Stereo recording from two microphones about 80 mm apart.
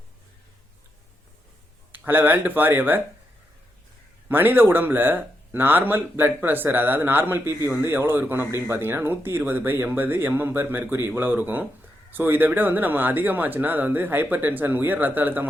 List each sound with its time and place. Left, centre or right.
1.9 s speech: right
4.3 s speech: right